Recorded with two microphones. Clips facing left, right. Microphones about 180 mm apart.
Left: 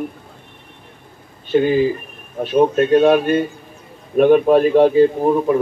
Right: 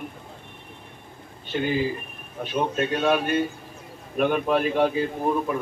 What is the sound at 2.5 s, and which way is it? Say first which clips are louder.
A man's voice: left 12 dB; 45° left (ahead or behind).